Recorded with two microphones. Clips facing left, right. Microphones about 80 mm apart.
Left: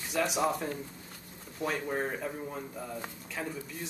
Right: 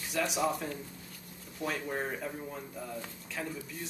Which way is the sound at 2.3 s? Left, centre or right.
Centre.